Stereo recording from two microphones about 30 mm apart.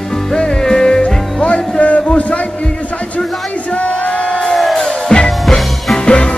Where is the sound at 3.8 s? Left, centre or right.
Left.